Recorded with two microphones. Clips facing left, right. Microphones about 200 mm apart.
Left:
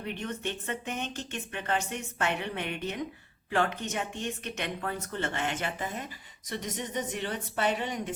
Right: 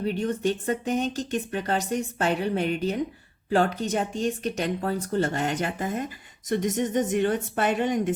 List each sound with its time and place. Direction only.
0.0 s a woman's voice: 35° right (ahead or behind)